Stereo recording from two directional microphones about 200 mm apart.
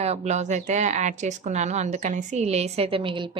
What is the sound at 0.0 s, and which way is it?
Speech, 35° right (ahead or behind).